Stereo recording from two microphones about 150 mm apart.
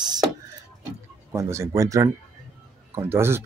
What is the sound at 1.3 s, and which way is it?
Speech, 20° right (ahead or behind).